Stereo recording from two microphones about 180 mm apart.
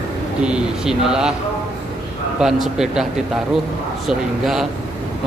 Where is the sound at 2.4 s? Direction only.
5° right (ahead or behind).